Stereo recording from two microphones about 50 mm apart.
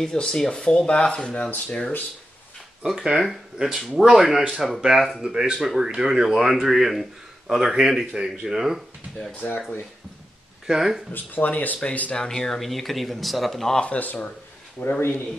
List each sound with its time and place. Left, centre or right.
0.0 s speech: centre
2.8 s a man's voice: centre
3.6 s speech: right
3.9 s a man's voice: centre
5.0 s speech: centre
5.3 s a man's voice: centre
9.4 s speech: left
10.7 s a man's voice: centre
11.1 s speech: left
12.2 s speech: centre
13.9 s speech: left
14.8 s speech: left